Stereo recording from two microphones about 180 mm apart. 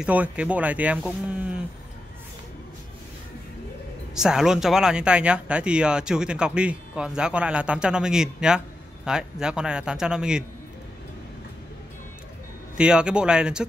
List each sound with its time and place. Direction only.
0.0 s speech: 5° right (ahead or behind)
4.1 s speech: 5° right (ahead or behind)
12.7 s speech: 5° right (ahead or behind)